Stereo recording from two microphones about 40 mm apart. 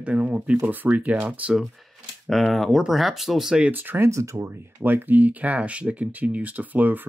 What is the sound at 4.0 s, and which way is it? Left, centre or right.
Speech, right.